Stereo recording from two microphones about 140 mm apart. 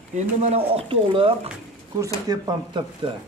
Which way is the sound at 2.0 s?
25° right (ahead or behind).